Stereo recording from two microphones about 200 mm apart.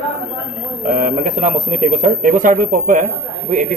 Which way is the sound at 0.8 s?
40° right (ahead or behind).